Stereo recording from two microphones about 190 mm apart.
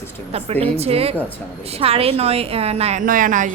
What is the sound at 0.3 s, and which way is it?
A woman's voice, 35° right (ahead or behind).